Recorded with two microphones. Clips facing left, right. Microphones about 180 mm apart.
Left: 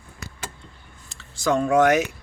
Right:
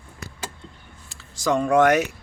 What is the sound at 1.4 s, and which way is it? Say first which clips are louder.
Speech: even; centre (ahead or behind).